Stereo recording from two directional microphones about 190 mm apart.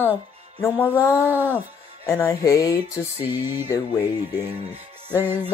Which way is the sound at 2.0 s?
20° left (ahead or behind).